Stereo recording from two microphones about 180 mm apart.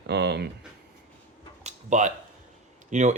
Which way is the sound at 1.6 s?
40° right (ahead or behind).